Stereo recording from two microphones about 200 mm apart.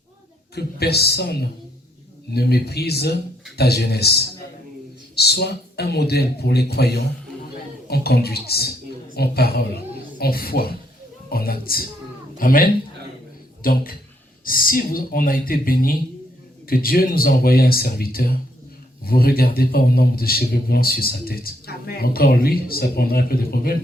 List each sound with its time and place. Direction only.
0.5 s a man's voice: 55° left (ahead or behind)